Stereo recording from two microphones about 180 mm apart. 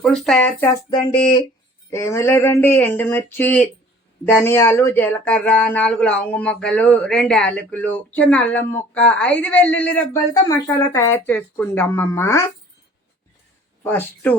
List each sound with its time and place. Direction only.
0.0 s speech: centre (ahead or behind)
0.6 s a sound: 20° left (ahead or behind)
1.9 s speech: 15° left (ahead or behind)
13.8 s speech: 10° left (ahead or behind)